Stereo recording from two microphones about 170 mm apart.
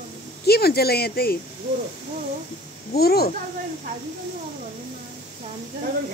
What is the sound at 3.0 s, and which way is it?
Speech, 65° left (ahead or behind).